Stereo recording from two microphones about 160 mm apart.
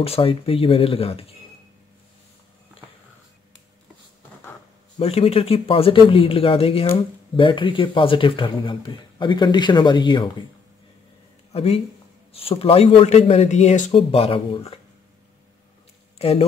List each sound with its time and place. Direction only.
0.0 s speech: 35° left (ahead or behind)
4.9 s speech: 40° left (ahead or behind)
11.5 s speech: 40° left (ahead or behind)
16.2 s a man's voice: 40° left (ahead or behind)